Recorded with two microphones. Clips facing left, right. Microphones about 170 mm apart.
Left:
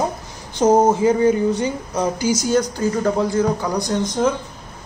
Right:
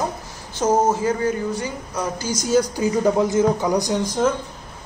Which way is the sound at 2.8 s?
15° right (ahead or behind).